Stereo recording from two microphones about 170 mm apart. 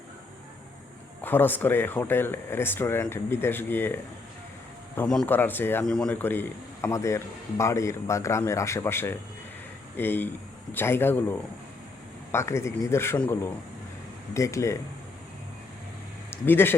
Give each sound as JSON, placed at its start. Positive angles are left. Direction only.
{"t": 1.2, "sound": "speech", "side_deg": 10}
{"t": 4.9, "sound": "speech", "side_deg": 5}
{"t": 16.3, "sound": "speech", "side_deg": 15}